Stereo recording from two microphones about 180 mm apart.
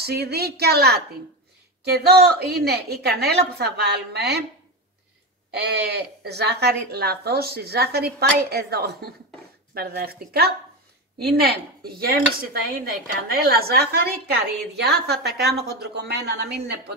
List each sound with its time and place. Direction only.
0.0 s speech: 65° right (ahead or behind)
5.6 s speech: 65° right (ahead or behind)